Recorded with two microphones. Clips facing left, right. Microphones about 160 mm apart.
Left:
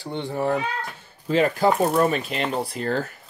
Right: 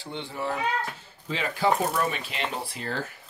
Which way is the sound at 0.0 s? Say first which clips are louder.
Left 7 dB; 50° left (ahead or behind).